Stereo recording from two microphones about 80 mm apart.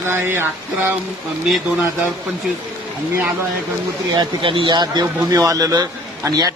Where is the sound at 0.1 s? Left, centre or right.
Right.